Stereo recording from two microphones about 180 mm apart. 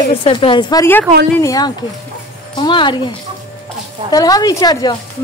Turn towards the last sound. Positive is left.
turn(degrees=20)  # may be behind; listen again after turning